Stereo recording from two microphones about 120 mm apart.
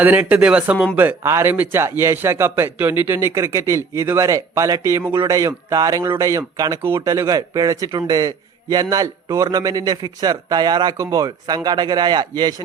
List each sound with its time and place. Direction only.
0.0 s a man's voice: 15° right (ahead or behind); by 12.5 s 35° right (ahead or behind)